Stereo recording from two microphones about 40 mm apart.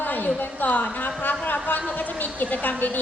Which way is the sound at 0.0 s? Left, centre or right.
Left.